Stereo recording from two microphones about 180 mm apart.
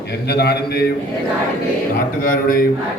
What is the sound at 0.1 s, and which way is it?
Speech, 65° left (ahead or behind).